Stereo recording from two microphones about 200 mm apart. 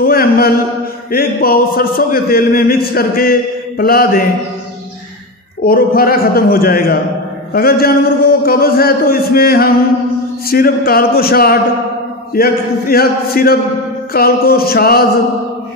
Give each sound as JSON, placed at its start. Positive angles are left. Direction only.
{"t": 0.0, "sound": "a sound", "side_deg": 45}
{"t": 1.1, "sound": "speech", "side_deg": 50}
{"t": 5.6, "sound": "speech", "side_deg": 50}